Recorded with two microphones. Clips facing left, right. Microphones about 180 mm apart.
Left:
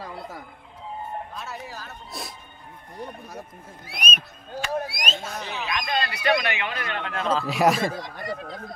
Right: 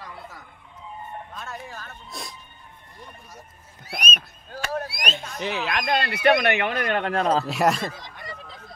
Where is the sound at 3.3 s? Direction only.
60° left (ahead or behind).